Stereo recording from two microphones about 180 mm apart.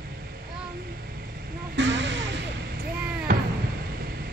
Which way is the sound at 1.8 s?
80° right.